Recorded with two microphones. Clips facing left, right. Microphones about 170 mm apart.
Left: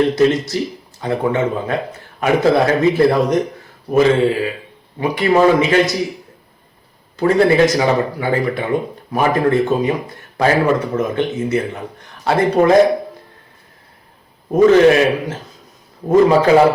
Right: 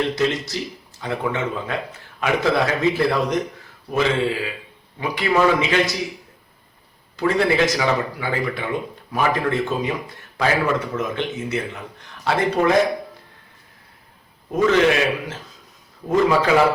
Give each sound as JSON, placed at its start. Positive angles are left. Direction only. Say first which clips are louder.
{"t": 0.0, "sound": "a man's voice", "louder": "left 8 dB", "side_deg": 45}
{"t": 7.2, "sound": "speech", "louder": "left 6 dB", "side_deg": 45}
{"t": 14.5, "sound": "speech", "louder": "left 7 dB", "side_deg": 40}